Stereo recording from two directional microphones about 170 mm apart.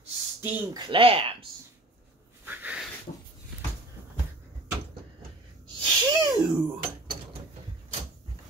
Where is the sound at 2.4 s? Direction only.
10° right (ahead or behind).